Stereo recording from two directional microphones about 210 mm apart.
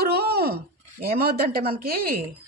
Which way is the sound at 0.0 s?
50° right (ahead or behind).